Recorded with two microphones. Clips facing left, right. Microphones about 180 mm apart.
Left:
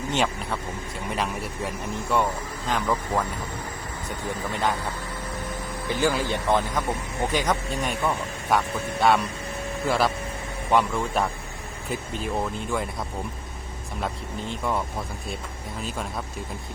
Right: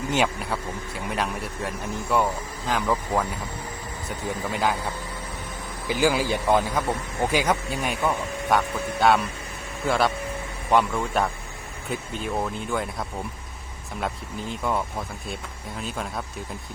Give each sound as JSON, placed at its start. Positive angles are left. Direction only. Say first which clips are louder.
{"t": 0.1, "sound": "speech", "louder": "right 2 dB", "side_deg": -5}
{"t": 4.5, "sound": "speech", "louder": "right 1 dB", "side_deg": -5}
{"t": 5.9, "sound": "speech", "louder": "right 2 dB", "side_deg": -10}
{"t": 14.5, "sound": "speech", "louder": "right 1 dB", "side_deg": 0}